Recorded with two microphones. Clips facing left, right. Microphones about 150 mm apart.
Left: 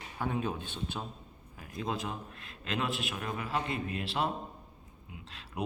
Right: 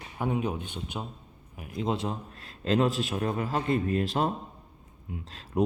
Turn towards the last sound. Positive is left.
turn(degrees=-40)  # may be behind; listen again after turning